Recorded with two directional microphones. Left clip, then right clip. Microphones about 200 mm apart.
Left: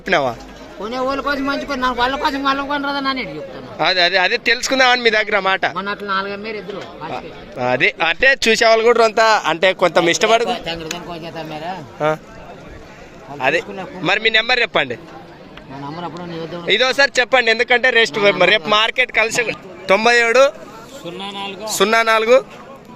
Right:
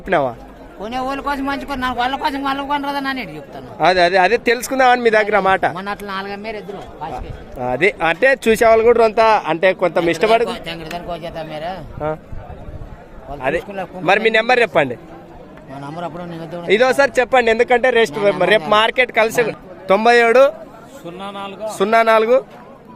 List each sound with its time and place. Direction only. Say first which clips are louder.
0.0 s speech: even; 5° right (ahead or behind)
0.8 s a man's voice: left 2 dB; 30° right (ahead or behind)
3.8 s speech: right 2 dB; 5° right (ahead or behind)
5.7 s a man's voice: left 4 dB; 25° right (ahead or behind)
7.6 s speech: left 1 dB; 5° right (ahead or behind)
10.9 s a man's voice: right 3 dB; 20° right (ahead or behind)
11.9 s speech: left 6 dB; centre (ahead or behind)
13.4 s speech: left 3 dB; centre (ahead or behind)
14.0 s speech: right 1 dB; 10° right (ahead or behind)
16.0 s a man's voice: right 3 dB; 25° right (ahead or behind)
16.6 s speech: right 1 dB; 10° right (ahead or behind)